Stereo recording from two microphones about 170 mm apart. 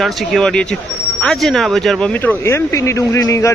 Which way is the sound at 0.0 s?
Centre (ahead or behind).